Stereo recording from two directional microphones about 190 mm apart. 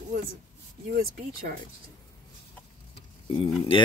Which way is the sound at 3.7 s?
30° left (ahead or behind).